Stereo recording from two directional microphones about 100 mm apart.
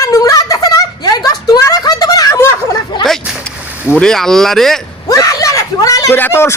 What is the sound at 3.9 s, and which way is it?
Speech, 5° left (ahead or behind).